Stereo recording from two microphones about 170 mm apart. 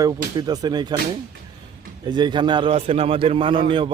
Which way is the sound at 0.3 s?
25° right (ahead or behind).